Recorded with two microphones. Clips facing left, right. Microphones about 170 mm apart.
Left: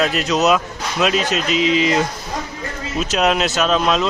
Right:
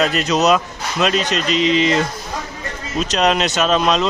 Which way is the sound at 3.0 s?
5° left (ahead or behind).